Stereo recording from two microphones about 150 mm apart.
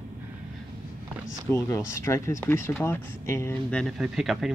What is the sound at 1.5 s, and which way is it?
Speech, 20° left (ahead or behind).